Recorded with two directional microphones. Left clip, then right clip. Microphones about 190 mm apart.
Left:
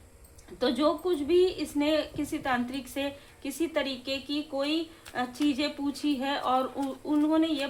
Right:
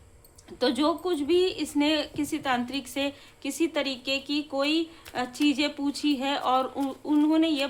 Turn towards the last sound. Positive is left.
turn(degrees=-25)  # may be behind; listen again after turning